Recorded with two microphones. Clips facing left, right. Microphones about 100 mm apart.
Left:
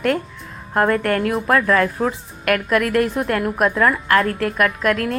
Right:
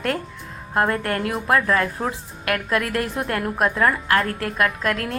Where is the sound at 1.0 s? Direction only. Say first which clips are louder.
Left 5 dB; 50° left (ahead or behind).